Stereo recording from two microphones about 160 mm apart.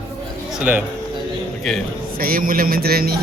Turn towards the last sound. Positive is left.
turn(degrees=-70)  # may be behind; listen again after turning